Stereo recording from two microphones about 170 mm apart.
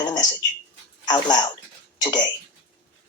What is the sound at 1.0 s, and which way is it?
Speech, 25° left (ahead or behind).